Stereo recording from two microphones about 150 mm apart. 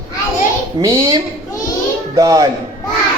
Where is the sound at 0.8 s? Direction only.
20° right (ahead or behind).